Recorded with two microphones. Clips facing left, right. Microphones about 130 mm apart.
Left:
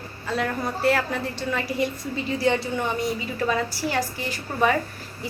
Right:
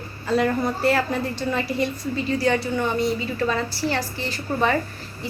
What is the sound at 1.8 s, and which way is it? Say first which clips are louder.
A woman's voice: right 2 dB; 15° left (ahead or behind).